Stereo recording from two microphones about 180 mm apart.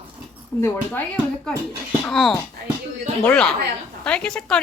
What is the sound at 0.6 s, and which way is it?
Speech, 15° left (ahead or behind).